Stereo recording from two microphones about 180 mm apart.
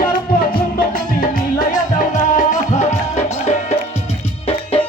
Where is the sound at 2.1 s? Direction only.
45° left (ahead or behind).